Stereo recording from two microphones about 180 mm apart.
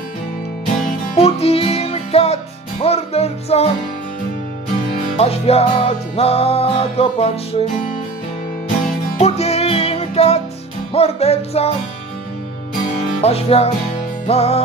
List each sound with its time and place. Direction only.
1.1 s music: 35° left (ahead or behind)
5.1 s music: 35° left (ahead or behind)
9.2 s music: 35° left (ahead or behind)
13.2 s music: 35° left (ahead or behind)